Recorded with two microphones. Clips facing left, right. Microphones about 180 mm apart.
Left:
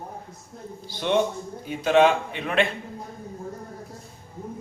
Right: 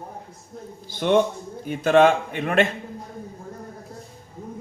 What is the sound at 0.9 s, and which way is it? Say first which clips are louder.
A man's voice: right 3 dB; 50° right (ahead or behind).